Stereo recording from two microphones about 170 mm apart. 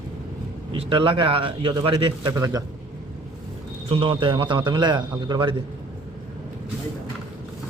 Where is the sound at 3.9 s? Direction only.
30° right (ahead or behind).